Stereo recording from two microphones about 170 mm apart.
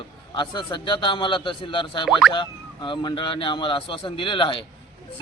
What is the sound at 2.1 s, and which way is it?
Boing, centre (ahead or behind).